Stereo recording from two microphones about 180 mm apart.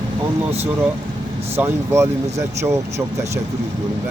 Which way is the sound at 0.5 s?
10° right (ahead or behind).